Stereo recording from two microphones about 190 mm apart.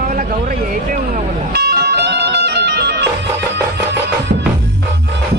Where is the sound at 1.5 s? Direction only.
60° right (ahead or behind).